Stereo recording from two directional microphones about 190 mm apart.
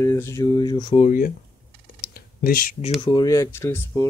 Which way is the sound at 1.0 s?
45° left (ahead or behind).